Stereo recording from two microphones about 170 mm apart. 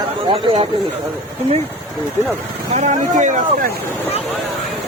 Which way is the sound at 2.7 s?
45° right (ahead or behind).